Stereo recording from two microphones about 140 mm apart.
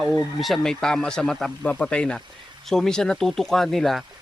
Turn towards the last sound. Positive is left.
turn(degrees=0)  # may be behind; listen again after turning